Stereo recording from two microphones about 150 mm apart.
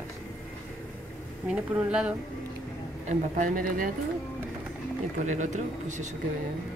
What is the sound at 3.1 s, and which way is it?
Speech, 60° right (ahead or behind).